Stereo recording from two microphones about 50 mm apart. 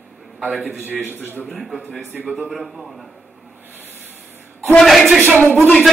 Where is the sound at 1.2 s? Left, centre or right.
Left.